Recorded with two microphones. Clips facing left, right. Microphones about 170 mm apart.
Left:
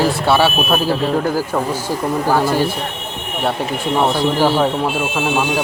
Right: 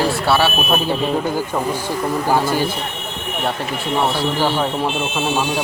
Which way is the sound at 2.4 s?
Centre (ahead or behind).